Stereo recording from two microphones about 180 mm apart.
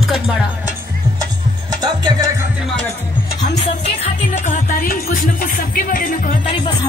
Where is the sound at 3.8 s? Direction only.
40° left (ahead or behind).